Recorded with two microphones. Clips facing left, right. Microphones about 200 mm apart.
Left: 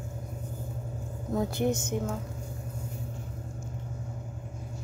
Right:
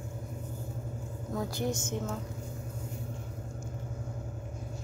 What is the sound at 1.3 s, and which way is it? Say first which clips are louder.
Speech: left 5 dB; 25° left (ahead or behind).